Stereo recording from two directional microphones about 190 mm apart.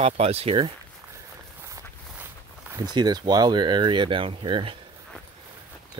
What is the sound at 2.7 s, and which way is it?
Speech, 20° right (ahead or behind).